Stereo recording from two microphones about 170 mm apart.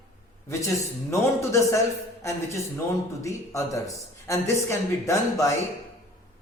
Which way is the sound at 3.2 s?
20° left (ahead or behind).